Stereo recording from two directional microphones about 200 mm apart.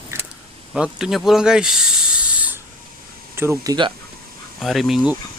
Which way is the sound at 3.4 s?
15° right (ahead or behind).